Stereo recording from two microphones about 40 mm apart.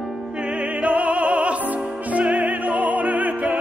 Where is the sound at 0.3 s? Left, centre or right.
Right.